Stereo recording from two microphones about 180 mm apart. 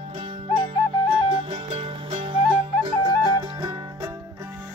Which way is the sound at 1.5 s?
30° right (ahead or behind).